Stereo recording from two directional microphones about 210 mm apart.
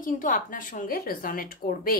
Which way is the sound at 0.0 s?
40° left (ahead or behind).